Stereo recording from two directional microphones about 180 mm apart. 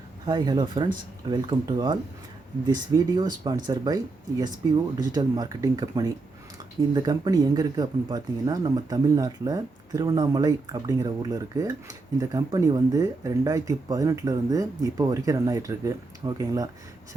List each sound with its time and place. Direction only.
0.3 s speech: 25° right (ahead or behind)